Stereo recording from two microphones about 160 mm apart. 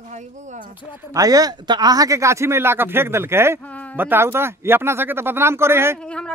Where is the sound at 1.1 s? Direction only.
20° right (ahead or behind).